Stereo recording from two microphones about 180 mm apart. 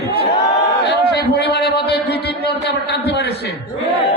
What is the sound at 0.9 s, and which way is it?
A man's voice, 70° left (ahead or behind).